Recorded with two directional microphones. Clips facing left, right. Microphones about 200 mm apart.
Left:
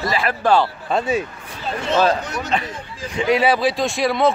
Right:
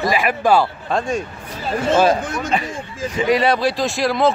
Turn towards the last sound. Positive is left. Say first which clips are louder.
# even
turn(degrees=0)  # may be behind; listen again after turning